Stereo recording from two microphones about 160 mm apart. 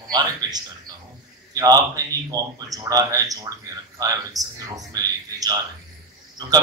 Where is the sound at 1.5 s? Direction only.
20° right (ahead or behind).